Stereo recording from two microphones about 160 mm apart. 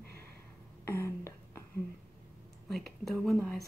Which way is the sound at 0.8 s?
15° left (ahead or behind).